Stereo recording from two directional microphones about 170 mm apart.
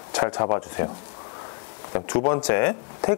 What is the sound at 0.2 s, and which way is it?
Speech, 20° left (ahead or behind).